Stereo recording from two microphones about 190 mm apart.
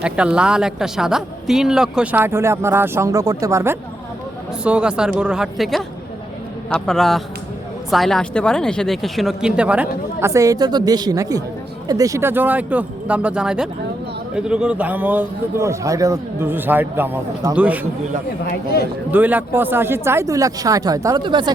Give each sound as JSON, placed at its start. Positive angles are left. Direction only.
{"t": 0.0, "sound": "speech", "side_deg": -5}
{"t": 19.1, "sound": "speech", "side_deg": -10}